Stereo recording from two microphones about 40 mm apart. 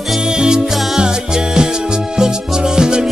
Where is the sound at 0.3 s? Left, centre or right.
Centre.